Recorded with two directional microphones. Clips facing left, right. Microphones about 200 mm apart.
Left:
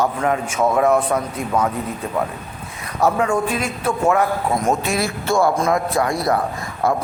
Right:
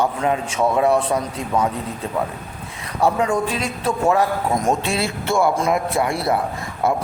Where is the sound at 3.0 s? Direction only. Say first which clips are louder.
Left 1 dB; 30° right (ahead or behind).